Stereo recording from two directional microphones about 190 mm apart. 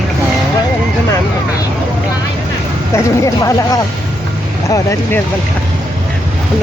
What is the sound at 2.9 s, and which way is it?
Speech, 15° left (ahead or behind).